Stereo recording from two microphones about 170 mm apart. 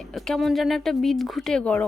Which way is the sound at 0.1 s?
Centre (ahead or behind).